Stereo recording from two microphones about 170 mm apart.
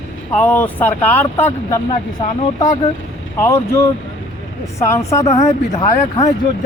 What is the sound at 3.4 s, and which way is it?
Speech, 15° left (ahead or behind).